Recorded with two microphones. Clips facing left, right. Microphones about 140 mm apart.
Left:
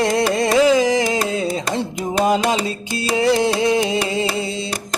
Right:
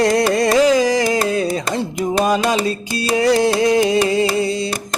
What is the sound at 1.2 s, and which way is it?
Carnatic music, 20° left (ahead or behind).